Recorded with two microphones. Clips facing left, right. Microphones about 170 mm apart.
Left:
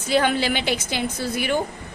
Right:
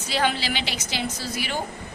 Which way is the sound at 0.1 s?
50° left (ahead or behind).